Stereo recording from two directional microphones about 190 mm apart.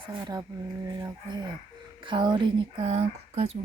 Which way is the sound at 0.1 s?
20° right (ahead or behind).